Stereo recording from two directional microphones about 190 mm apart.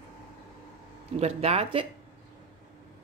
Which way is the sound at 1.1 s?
35° right (ahead or behind).